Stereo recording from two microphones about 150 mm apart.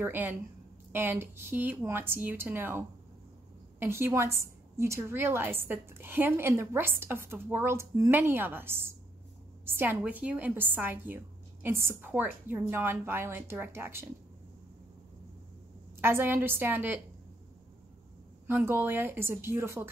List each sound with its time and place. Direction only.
0.0 s a woman's voice: 15° right (ahead or behind)
3.8 s a woman's voice: 15° right (ahead or behind)
16.0 s a woman's voice: 15° right (ahead or behind)
18.5 s a woman's voice: 15° right (ahead or behind)